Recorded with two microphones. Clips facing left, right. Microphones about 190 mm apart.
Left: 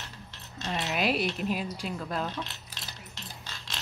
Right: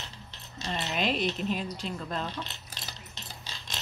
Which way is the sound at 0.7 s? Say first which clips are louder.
Left 1 dB; 10° left (ahead or behind).